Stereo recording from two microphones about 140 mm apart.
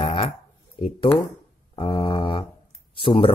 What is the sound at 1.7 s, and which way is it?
Speech, 35° left (ahead or behind).